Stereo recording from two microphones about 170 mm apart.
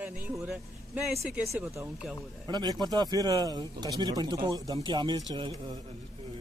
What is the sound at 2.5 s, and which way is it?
Speech, 25° right (ahead or behind).